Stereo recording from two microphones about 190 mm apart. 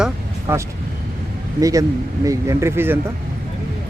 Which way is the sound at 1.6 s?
15° right (ahead or behind).